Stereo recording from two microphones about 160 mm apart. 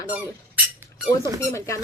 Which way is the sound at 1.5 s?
20° left (ahead or behind).